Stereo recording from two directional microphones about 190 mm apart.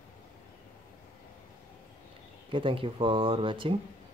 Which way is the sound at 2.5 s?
25° right (ahead or behind).